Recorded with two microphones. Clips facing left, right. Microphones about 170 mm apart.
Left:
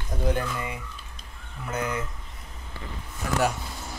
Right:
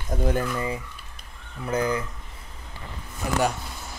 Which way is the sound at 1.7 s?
30° right (ahead or behind).